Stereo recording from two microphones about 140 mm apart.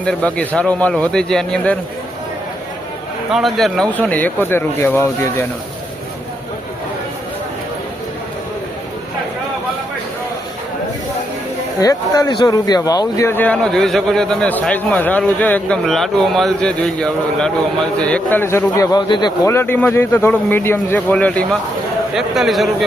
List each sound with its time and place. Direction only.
0.0 s speech: 10° left (ahead or behind)
3.3 s a man's voice: centre (ahead or behind)
3.9 s speech: 10° left (ahead or behind)
11.8 s a man's voice: 25° left (ahead or behind)
19.5 s speech: 15° left (ahead or behind)
22.1 s a man's voice: centre (ahead or behind)